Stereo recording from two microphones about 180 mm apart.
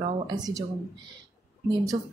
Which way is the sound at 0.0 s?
20° right (ahead or behind).